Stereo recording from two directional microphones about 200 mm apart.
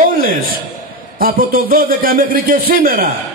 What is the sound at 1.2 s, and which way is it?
A man's voice, 45° right (ahead or behind).